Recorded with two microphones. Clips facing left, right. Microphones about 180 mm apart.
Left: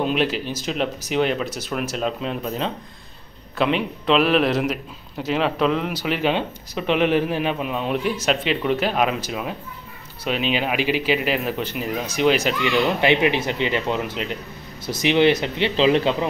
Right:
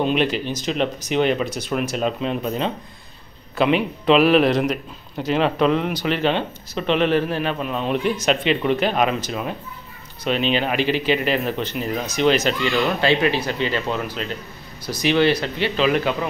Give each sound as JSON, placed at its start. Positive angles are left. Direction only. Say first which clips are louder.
{"t": 0.0, "sound": "a man's voice", "louder": "right 2 dB", "side_deg": 5}